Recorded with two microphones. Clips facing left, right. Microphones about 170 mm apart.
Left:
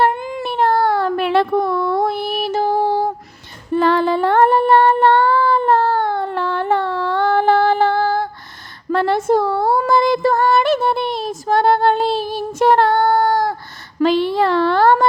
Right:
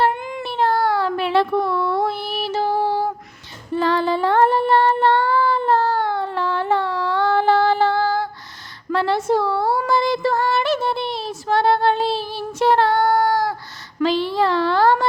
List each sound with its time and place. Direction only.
0.2 s baby cry: 35° left (ahead or behind)
0.4 s child singing: 55° left (ahead or behind)
8.9 s female singing: 50° left (ahead or behind)
13.2 s a sound: 55° left (ahead or behind)
14.0 s speech: 55° left (ahead or behind)